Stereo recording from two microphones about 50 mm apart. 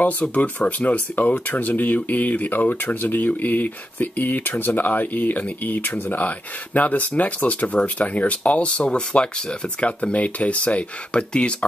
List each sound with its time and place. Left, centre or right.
0.0 s speech: left